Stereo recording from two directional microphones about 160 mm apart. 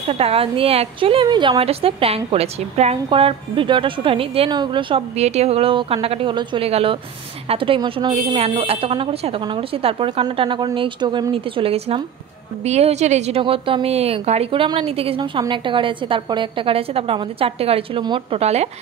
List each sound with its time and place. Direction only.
0.1 s a woman's voice: 40° right (ahead or behind)